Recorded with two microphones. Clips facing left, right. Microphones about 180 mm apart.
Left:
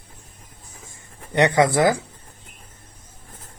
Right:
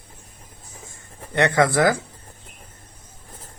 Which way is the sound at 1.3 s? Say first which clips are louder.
Left 1 dB; 15° left (ahead or behind).